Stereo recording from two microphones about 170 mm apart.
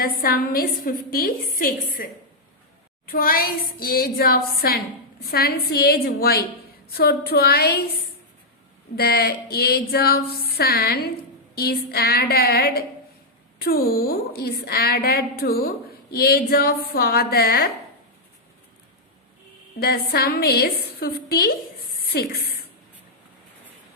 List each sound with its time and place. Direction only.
0.0 s a woman's voice: 60° left (ahead or behind)
3.1 s a woman's voice: 60° left (ahead or behind)
9.0 s a woman's voice: 65° left (ahead or behind)
19.8 s a woman's voice: 65° left (ahead or behind)